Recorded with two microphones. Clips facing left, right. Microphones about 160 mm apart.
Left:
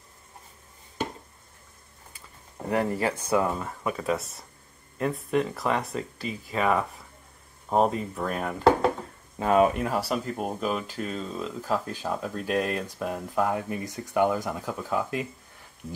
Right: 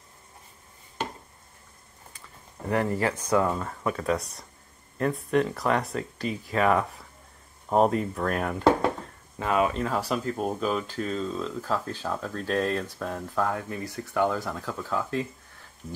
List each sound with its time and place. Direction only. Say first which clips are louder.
2.7 s speech: even; 20° left (ahead or behind); by 8.6 s centre (ahead or behind)
9.4 s speech: left 4 dB; 35° left (ahead or behind)
9.8 s speech: even; 10° left (ahead or behind)